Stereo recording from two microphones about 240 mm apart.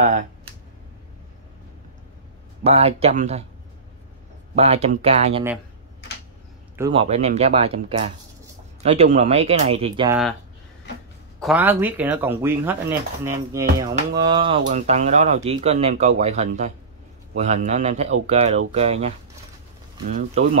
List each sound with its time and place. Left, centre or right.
2.6 s speech: right
4.6 s speech: right
6.8 s speech: right
11.3 s speech: centre; by 20.4 s right